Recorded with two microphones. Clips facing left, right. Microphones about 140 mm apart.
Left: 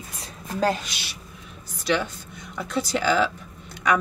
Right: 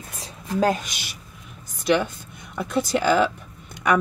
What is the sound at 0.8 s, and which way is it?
Speech, 45° right (ahead or behind).